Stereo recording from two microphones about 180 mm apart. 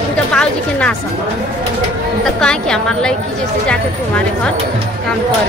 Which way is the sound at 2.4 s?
5° left (ahead or behind).